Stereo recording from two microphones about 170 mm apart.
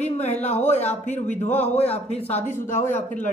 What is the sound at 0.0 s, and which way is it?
A woman's voice, 40° left (ahead or behind).